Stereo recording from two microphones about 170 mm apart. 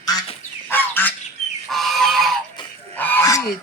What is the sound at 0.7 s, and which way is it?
Goose, 10° left (ahead or behind).